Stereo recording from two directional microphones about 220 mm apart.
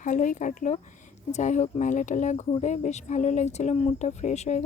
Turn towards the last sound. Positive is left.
turn(degrees=30)  # may be behind; listen again after turning